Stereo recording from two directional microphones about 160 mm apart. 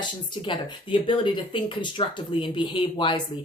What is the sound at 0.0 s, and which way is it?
Speech, 30° left (ahead or behind).